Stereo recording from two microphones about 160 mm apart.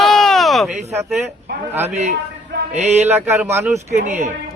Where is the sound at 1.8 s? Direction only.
45° right (ahead or behind).